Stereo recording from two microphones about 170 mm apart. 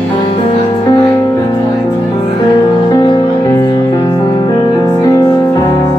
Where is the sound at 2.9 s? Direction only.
20° left (ahead or behind).